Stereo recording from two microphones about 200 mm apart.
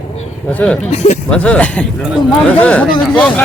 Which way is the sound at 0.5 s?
5° left (ahead or behind).